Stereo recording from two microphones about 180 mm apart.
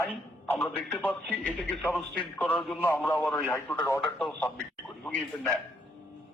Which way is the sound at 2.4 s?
5° left (ahead or behind).